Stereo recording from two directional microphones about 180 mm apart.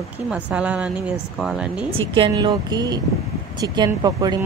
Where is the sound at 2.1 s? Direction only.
25° right (ahead or behind).